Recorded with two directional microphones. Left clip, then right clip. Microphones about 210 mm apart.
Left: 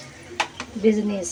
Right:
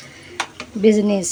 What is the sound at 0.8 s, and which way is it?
Speech, 50° right (ahead or behind).